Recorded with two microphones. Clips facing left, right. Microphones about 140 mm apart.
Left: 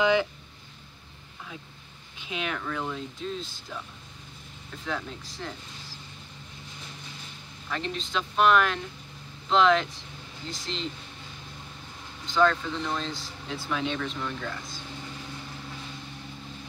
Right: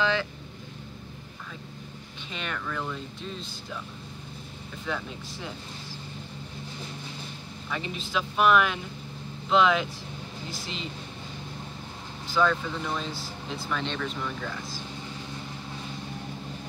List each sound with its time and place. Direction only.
0.0 s speech: 15° left (ahead or behind)
2.2 s speech: 5° left (ahead or behind)
4.8 s speech: centre (ahead or behind)
7.7 s speech: 5° right (ahead or behind)
12.3 s speech: 5° right (ahead or behind)